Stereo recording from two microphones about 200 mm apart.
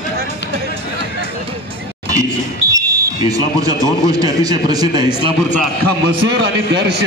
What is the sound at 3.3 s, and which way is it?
Speech, 20° right (ahead or behind).